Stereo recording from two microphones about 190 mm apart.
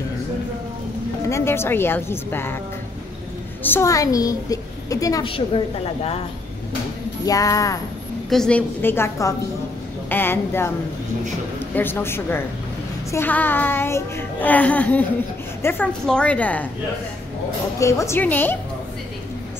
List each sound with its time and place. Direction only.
1.3 s speech: 15° left (ahead or behind)
3.6 s speech: 15° left (ahead or behind)
7.2 s speech: 20° left (ahead or behind)
8.3 s speech: 5° left (ahead or behind)
11.7 s speech: 10° left (ahead or behind)
17.7 s speech: 15° left (ahead or behind)